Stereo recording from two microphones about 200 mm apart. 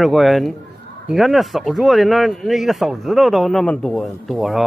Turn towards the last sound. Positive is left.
turn(degrees=0)  # may be behind; listen again after turning